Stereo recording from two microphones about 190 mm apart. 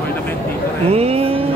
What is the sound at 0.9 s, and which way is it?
Speech, 30° right (ahead or behind).